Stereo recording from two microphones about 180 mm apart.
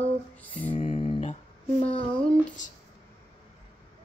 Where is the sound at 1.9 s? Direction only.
30° left (ahead or behind).